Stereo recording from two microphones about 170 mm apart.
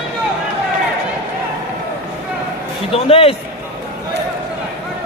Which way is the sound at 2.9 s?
35° left (ahead or behind).